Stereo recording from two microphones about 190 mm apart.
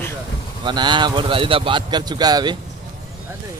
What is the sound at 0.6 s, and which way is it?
Speech, 25° right (ahead or behind).